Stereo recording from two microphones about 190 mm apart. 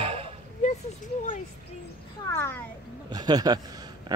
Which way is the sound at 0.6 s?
40° left (ahead or behind).